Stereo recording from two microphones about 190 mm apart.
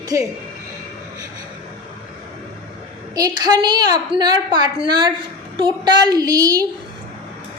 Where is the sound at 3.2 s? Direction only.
20° right (ahead or behind).